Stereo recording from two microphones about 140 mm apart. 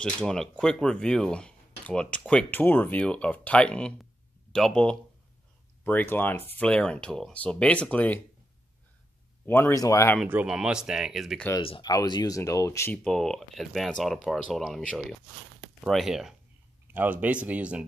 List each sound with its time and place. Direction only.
0.0 s speech: 5° left (ahead or behind)
9.5 s speech: 15° left (ahead or behind)
10.2 s speech: 10° right (ahead or behind)
11.6 s speech: 40° left (ahead or behind)
11.9 s speech: 25° left (ahead or behind)
12.9 s speech: 5° left (ahead or behind)
16.8 s speech: 15° right (ahead or behind)